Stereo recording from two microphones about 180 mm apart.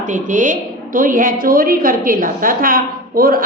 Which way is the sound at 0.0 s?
45° right (ahead or behind).